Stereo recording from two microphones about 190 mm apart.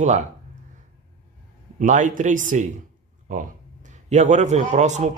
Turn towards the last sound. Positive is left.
turn(degrees=-40)  # may be behind; listen again after turning